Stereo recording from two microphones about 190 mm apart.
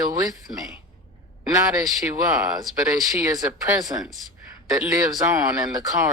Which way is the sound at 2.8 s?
15° right (ahead or behind).